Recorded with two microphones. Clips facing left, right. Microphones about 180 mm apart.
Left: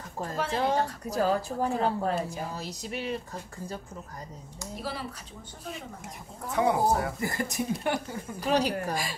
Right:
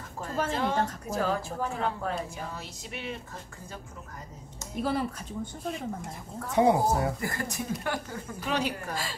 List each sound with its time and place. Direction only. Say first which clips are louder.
0.5 s a woman's voice: left 3 dB; 40° left (ahead or behind)
4.8 s a woman's voice: right 8 dB; 50° right (ahead or behind)
6.5 s speech: right 2 dB; 25° right (ahead or behind)
7.2 s speech: left 3 dB; 20° left (ahead or behind)
8.4 s a woman's voice: left 5 dB; 35° left (ahead or behind)